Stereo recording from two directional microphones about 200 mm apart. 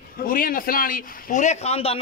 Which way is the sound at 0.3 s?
45° left (ahead or behind).